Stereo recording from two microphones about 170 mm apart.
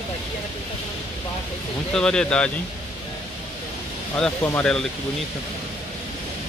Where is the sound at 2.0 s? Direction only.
5° left (ahead or behind).